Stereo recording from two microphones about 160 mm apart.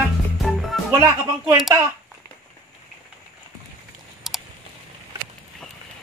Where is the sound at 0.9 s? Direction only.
15° right (ahead or behind).